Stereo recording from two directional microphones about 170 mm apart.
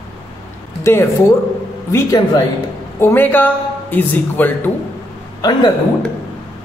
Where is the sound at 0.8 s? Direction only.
15° left (ahead or behind).